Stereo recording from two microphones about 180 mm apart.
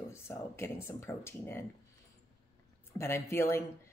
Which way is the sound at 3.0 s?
15° left (ahead or behind).